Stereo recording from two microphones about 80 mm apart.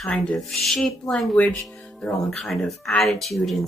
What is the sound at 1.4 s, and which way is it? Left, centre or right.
Speech, centre.